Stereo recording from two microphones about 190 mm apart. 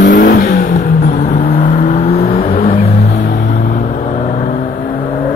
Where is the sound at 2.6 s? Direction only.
50° left (ahead or behind).